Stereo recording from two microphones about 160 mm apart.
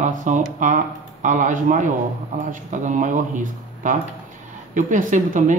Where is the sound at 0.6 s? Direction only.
50° right (ahead or behind).